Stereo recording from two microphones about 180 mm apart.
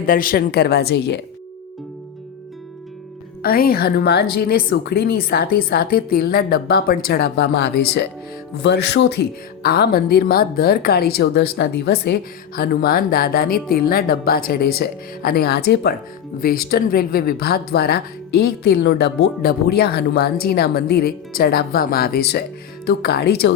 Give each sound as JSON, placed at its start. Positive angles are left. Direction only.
{"t": 0.0, "sound": "a woman's voice", "side_deg": 55}
{"t": 3.4, "sound": "a woman's voice", "side_deg": 55}
{"t": 8.5, "sound": "music", "side_deg": 65}
{"t": 9.6, "sound": "a woman's voice", "side_deg": 60}